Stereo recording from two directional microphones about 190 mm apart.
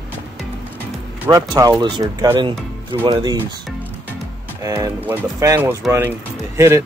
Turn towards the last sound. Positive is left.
turn(degrees=-15)  # may be behind; listen again after turning